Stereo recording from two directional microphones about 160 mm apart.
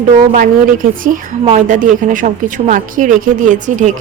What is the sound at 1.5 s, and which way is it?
Speech, 50° right (ahead or behind).